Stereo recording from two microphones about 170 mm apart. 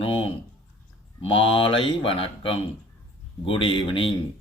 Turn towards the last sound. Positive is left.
turn(degrees=30)  # may be behind; listen again after turning